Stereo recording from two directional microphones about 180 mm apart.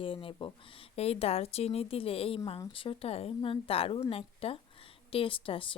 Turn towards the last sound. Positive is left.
turn(degrees=30)  # may be behind; listen again after turning